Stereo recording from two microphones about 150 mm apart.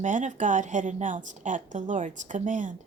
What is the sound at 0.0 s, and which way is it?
Speech, 55° right (ahead or behind).